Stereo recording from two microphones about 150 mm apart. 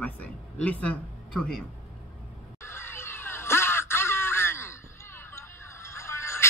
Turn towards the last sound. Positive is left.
turn(degrees=15)  # may be behind; listen again after turning